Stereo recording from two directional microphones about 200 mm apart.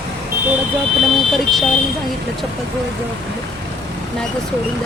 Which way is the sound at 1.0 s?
Centre (ahead or behind).